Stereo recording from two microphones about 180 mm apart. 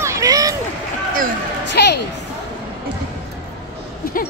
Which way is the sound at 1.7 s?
70° left (ahead or behind).